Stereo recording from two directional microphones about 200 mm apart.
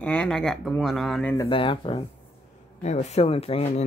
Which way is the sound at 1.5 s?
25° left (ahead or behind).